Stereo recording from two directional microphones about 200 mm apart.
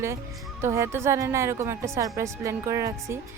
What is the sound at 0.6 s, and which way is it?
A woman's voice, 15° right (ahead or behind).